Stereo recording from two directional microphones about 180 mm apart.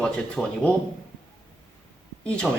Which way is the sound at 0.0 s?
5° left (ahead or behind).